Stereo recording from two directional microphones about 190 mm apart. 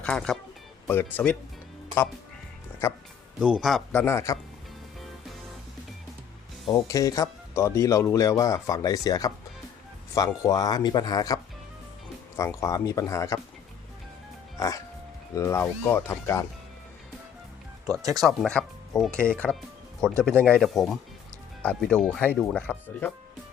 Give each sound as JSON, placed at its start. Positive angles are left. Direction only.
{"t": 0.0, "sound": "speech", "side_deg": 5}
{"t": 3.4, "sound": "speech", "side_deg": -5}
{"t": 4.0, "sound": "speech", "side_deg": 15}
{"t": 6.7, "sound": "speech", "side_deg": 15}
{"t": 12.4, "sound": "speech", "side_deg": 15}
{"t": 15.4, "sound": "speech", "side_deg": 15}
{"t": 18.2, "sound": "speech", "side_deg": 5}